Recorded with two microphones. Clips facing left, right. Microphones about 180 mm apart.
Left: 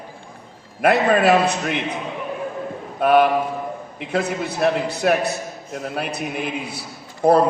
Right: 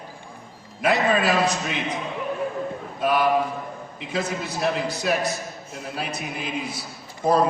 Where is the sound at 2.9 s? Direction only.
60° left (ahead or behind).